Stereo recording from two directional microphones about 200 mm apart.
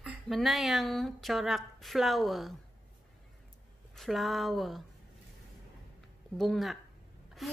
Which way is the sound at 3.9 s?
Centre (ahead or behind).